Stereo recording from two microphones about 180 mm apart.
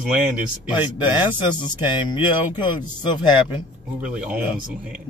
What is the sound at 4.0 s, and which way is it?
Speech, 5° right (ahead or behind).